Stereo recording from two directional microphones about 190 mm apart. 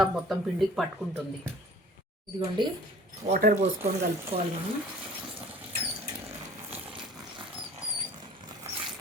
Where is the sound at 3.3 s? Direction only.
50° right (ahead or behind).